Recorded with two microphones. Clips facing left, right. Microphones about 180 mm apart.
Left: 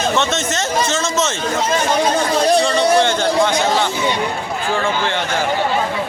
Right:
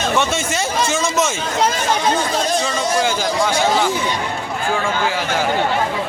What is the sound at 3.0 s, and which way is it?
A man's voice, 5° right (ahead or behind).